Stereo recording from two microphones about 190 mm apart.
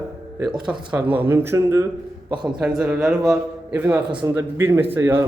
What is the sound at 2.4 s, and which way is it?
Speech, 5° right (ahead or behind).